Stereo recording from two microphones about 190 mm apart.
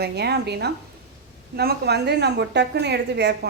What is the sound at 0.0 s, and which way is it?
A woman's voice, 60° right (ahead or behind).